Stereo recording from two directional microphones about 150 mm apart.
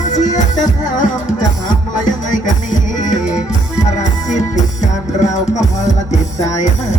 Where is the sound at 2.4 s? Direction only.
55° left (ahead or behind).